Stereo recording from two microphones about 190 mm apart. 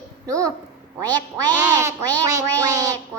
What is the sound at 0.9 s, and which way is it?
Quack, 20° right (ahead or behind).